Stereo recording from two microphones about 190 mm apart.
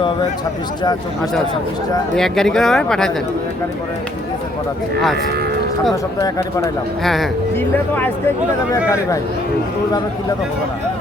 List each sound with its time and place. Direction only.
2.1 s speech: centre (ahead or behind)
5.9 s speech: 15° left (ahead or behind)
7.0 s speech: centre (ahead or behind)